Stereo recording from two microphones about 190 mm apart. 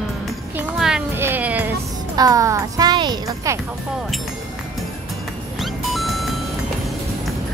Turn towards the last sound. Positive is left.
turn(degrees=0)  # may be behind; listen again after turning